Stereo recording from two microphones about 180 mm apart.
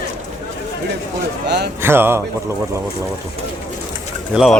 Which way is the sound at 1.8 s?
10° right (ahead or behind).